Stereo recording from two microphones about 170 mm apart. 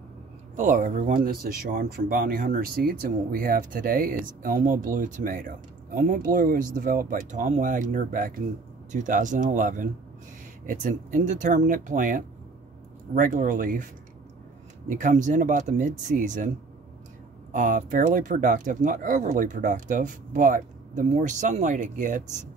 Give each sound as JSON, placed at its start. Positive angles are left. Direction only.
{"t": 0.6, "sound": "speech", "side_deg": -50}
{"t": 14.9, "sound": "speech", "side_deg": -50}